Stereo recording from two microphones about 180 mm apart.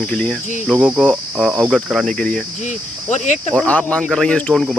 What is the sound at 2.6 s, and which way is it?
Speech, 45° left (ahead or behind).